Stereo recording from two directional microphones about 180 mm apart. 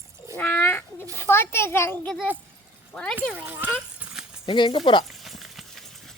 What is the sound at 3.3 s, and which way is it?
Speech, 10° right (ahead or behind).